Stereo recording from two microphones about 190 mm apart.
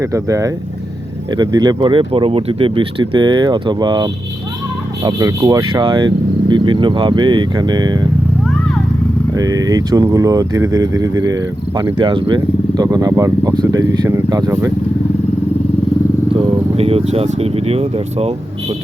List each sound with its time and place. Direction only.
0.0 s speech: 15° right (ahead or behind)
9.3 s speech: 20° right (ahead or behind)
16.4 s speech: 30° right (ahead or behind)